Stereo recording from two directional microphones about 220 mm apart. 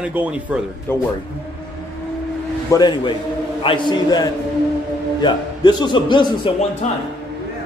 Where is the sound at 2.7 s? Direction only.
20° left (ahead or behind).